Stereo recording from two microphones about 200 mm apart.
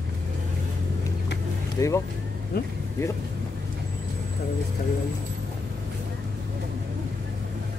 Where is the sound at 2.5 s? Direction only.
50° left (ahead or behind).